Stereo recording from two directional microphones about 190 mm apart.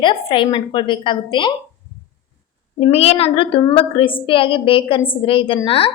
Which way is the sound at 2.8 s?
30° left (ahead or behind).